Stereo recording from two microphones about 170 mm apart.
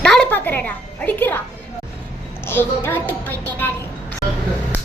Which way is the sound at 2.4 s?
15° left (ahead or behind).